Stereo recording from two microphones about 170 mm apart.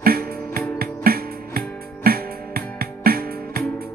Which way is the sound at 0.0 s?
60° right (ahead or behind).